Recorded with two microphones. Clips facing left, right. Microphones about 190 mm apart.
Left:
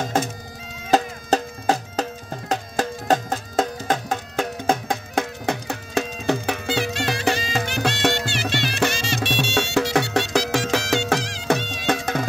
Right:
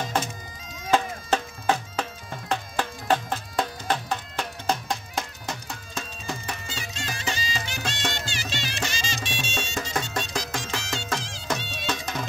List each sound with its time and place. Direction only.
0.8 s music: 40° left (ahead or behind); by 12.3 s 60° left (ahead or behind)